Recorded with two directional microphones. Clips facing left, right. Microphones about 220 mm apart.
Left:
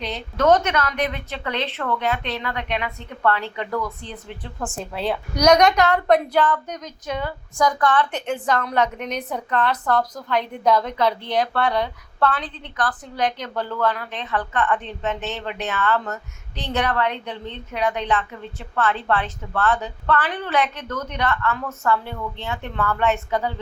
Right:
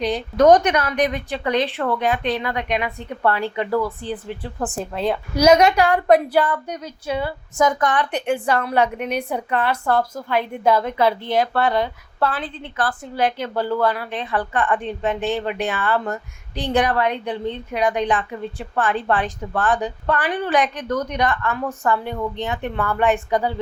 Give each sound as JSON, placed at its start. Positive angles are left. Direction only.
{"t": 0.0, "sound": "speech", "side_deg": -15}
{"t": 3.7, "sound": "speech", "side_deg": -30}
{"t": 5.3, "sound": "speech", "side_deg": -5}